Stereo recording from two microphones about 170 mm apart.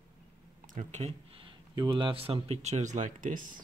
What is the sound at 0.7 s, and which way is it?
Speech, 40° right (ahead or behind).